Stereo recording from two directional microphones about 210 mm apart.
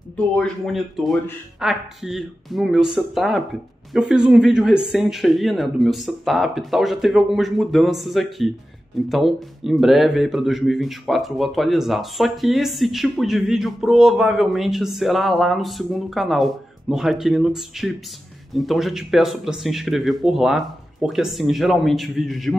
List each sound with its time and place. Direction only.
0.4 s speech: centre (ahead or behind)